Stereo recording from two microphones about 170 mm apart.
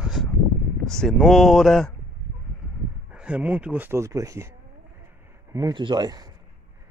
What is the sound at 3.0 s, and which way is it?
Speech, 5° right (ahead or behind).